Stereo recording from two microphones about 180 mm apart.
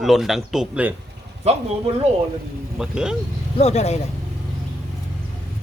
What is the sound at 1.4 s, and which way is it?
Speech, 35° right (ahead or behind).